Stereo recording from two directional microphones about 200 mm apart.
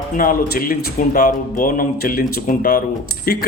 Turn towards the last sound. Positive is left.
turn(degrees=50)  # may be behind; listen again after turning